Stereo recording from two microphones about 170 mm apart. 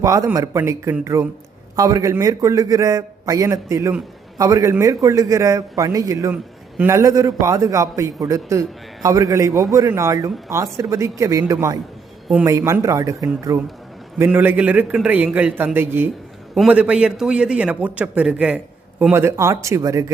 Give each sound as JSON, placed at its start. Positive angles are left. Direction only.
{"t": 0.0, "sound": "a man's voice", "side_deg": -20}